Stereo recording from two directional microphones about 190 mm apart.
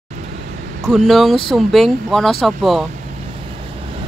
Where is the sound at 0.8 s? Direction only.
Centre (ahead or behind).